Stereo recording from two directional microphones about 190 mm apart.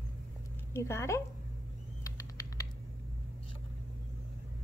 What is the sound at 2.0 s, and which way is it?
Rodents, 20° left (ahead or behind).